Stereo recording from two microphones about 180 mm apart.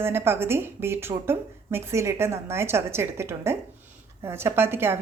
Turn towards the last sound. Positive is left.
turn(degrees=-15)  # may be behind; listen again after turning